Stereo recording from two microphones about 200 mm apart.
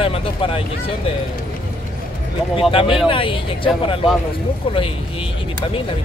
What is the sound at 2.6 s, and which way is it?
Speech, 25° left (ahead or behind).